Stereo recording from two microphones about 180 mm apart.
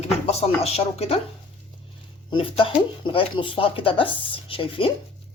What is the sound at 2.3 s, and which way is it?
Speech, 30° left (ahead or behind).